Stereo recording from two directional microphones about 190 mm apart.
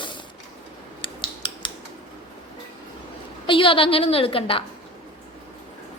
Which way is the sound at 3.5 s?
25° left (ahead or behind).